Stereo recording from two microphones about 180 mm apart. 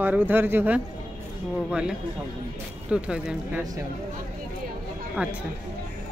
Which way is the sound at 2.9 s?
5° right (ahead or behind).